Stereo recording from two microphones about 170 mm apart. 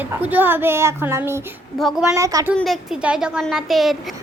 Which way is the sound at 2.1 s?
20° right (ahead or behind).